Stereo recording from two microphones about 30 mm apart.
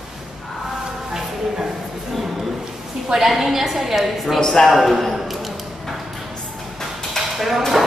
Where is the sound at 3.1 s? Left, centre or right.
Centre.